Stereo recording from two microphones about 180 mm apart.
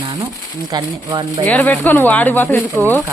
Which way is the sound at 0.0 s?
20° right (ahead or behind).